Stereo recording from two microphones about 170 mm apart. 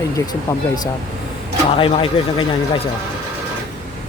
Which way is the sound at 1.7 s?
30° left (ahead or behind).